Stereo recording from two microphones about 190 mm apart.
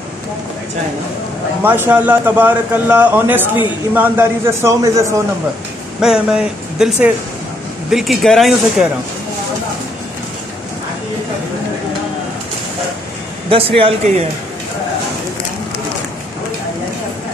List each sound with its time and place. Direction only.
1.6 s a man's voice: 10° right (ahead or behind)
5.9 s speech: 5° right (ahead or behind)
13.5 s speech: 30° right (ahead or behind)